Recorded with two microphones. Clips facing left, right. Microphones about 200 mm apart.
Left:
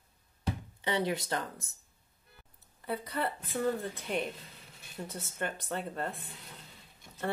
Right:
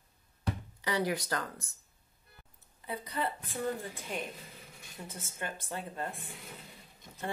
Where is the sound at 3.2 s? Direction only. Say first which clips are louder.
Left 3 dB; 60° left (ahead or behind).